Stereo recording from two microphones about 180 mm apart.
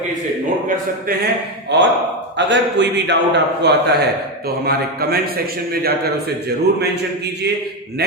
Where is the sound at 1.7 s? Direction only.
75° right (ahead or behind).